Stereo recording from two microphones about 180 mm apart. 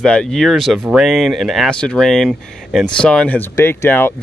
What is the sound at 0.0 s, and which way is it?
Speech, 5° left (ahead or behind).